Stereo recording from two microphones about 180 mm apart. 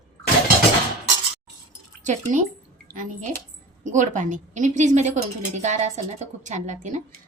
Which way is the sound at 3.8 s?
45° right (ahead or behind).